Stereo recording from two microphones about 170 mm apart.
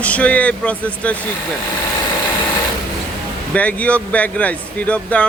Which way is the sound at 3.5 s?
10° left (ahead or behind).